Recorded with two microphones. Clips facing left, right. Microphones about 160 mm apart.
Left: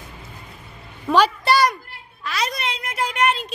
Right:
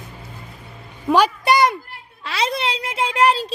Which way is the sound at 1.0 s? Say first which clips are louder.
Right 1 dB; 10° right (ahead or behind).